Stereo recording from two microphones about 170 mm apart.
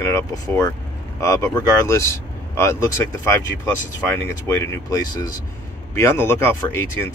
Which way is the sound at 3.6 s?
15° left (ahead or behind).